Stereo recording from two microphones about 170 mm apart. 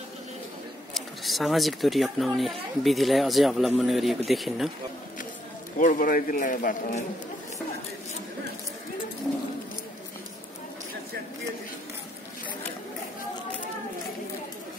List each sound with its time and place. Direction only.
0.9 s speech: centre (ahead or behind)
5.8 s a man's voice: 50° left (ahead or behind)